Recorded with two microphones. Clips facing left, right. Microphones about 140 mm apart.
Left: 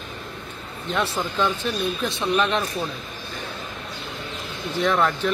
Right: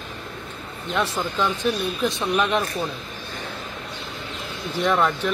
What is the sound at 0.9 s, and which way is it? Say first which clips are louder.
Speech: even; centre (ahead or behind).